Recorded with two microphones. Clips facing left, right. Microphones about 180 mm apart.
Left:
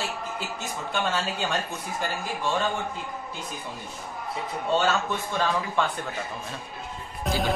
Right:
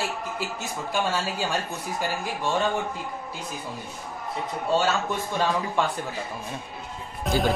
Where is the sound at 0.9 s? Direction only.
10° right (ahead or behind).